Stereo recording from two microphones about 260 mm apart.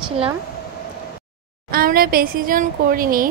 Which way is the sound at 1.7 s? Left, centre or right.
Right.